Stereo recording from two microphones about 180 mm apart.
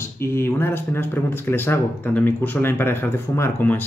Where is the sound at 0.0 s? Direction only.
15° left (ahead or behind).